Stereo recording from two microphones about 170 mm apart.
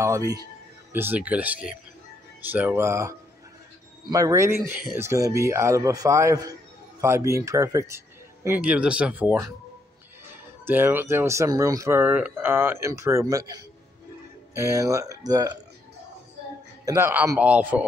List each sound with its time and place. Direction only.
0.0 s speech: 15° right (ahead or behind)
10.6 s speech: 10° right (ahead or behind)
16.8 s speech: 15° right (ahead or behind)